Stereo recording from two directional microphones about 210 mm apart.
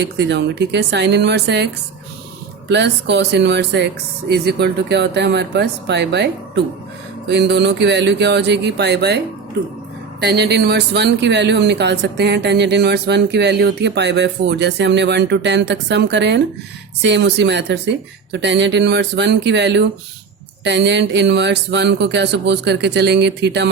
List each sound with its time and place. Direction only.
0.0 s speech: 55° right (ahead or behind)